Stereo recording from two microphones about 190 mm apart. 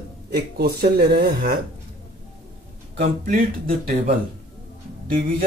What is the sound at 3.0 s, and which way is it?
Speech, 45° right (ahead or behind).